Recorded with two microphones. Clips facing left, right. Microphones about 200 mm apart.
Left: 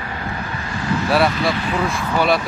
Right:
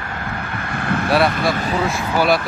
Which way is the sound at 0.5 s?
55° right (ahead or behind).